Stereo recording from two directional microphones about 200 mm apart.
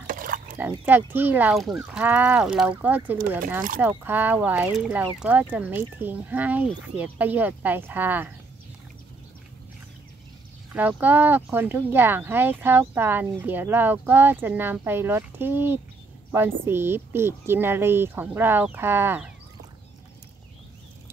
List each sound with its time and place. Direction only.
0.0 s a sound: 45° right (ahead or behind)
0.6 s speech: 10° right (ahead or behind)
10.7 s a woman's voice: 5° right (ahead or behind)